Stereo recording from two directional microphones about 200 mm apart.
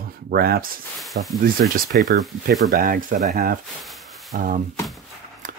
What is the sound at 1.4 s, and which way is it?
Speech, 45° right (ahead or behind).